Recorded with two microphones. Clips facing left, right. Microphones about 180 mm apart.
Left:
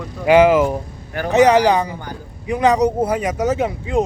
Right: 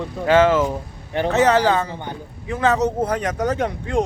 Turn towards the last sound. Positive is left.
turn(degrees=5)  # may be behind; listen again after turning